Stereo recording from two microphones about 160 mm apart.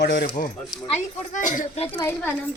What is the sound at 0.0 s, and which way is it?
Speech, 90° left.